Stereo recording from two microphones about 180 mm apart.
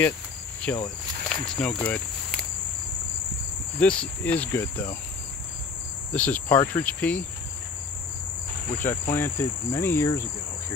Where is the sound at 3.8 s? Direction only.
5° left (ahead or behind).